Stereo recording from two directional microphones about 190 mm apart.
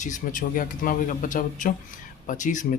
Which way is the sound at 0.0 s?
40° left (ahead or behind).